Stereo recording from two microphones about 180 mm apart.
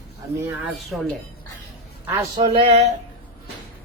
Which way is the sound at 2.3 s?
25° right (ahead or behind).